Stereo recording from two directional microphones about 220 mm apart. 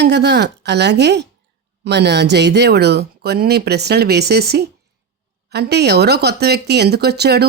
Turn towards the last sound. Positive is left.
turn(degrees=-50)  # may be behind; listen again after turning